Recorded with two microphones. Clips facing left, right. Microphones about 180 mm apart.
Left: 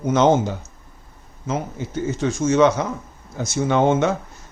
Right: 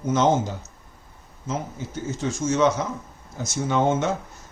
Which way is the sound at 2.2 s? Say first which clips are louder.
Left 4 dB; 65° left (ahead or behind).